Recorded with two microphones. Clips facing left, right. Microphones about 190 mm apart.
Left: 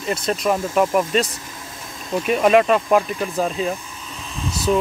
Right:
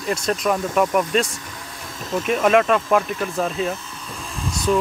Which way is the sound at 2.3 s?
5° left (ahead or behind).